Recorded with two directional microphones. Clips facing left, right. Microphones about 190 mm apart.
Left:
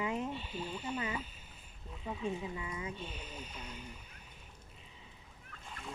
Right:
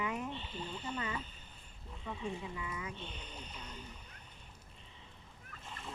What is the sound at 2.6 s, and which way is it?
Speech, 25° left (ahead or behind).